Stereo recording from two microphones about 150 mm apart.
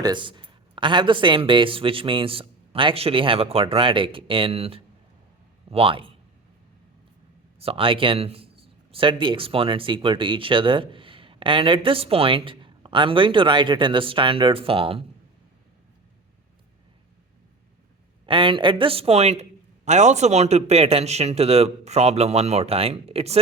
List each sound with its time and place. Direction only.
0.0 s a man's voice: 30° right (ahead or behind)
7.6 s speech: 40° right (ahead or behind)
18.3 s speech: 35° right (ahead or behind)